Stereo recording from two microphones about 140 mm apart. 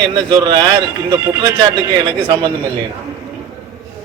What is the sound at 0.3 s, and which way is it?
Speech, 30° right (ahead or behind).